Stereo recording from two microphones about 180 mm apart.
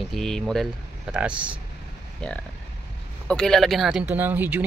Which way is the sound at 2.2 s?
5° left (ahead or behind).